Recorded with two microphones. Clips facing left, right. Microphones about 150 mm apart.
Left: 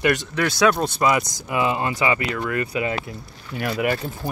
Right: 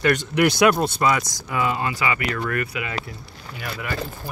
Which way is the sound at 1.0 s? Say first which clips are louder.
Left 4 dB; 15° left (ahead or behind).